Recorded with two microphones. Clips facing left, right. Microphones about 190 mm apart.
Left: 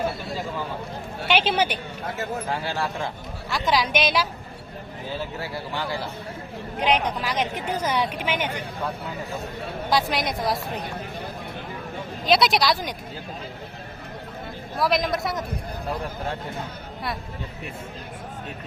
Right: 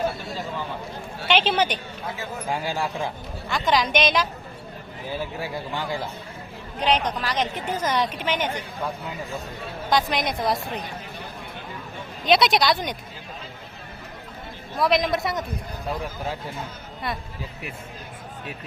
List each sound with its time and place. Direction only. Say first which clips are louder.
1.3 s a woman's voice: right 1 dB; 10° left (ahead or behind)
2.5 s speech: right 1 dB; 15° right (ahead or behind)
3.5 s speech: right 1 dB; centre (ahead or behind)
5.4 s speech: right 1 dB; 15° right (ahead or behind)
6.7 s a woman's voice: even; 10° left (ahead or behind)
9.9 s speech: right 1 dB; centre (ahead or behind)
12.2 s speech: right 1 dB; centre (ahead or behind)
14.8 s speech: right 2 dB; centre (ahead or behind)